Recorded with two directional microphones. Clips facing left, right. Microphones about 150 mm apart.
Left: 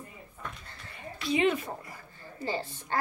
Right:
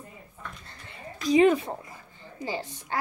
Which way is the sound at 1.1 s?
40° right (ahead or behind).